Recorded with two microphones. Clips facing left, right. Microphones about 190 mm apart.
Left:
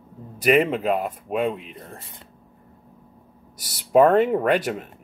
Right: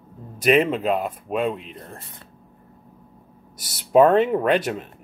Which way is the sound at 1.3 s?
55° left (ahead or behind).